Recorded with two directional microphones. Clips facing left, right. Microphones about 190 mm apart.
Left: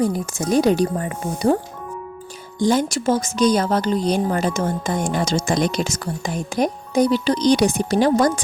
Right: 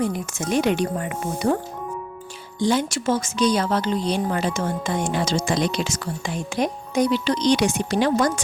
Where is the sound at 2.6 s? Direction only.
45° left (ahead or behind).